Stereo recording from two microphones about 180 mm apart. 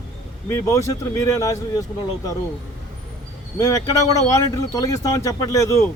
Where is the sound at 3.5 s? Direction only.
20° left (ahead or behind).